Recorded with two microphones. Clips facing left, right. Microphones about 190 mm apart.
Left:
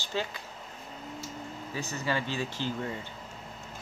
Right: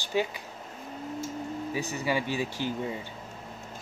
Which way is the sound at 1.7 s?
15° right (ahead or behind).